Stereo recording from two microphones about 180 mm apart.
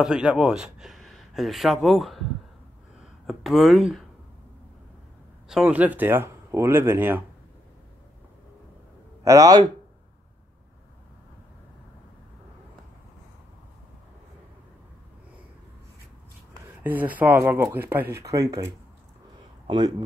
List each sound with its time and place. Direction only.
0.0 s a man's voice: 5° right (ahead or behind)
3.3 s speech: centre (ahead or behind)
5.5 s speech: 5° right (ahead or behind)
9.2 s speech: 20° right (ahead or behind)
16.8 s speech: 10° right (ahead or behind)